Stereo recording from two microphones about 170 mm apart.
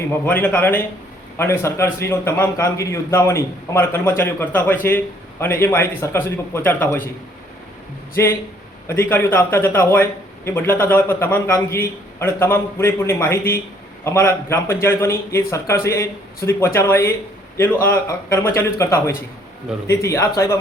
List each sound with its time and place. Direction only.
0.1 s a man's voice: 10° left (ahead or behind)
8.1 s a man's voice: 15° left (ahead or behind)